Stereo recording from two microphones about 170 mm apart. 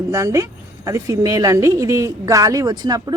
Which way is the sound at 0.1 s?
15° right (ahead or behind).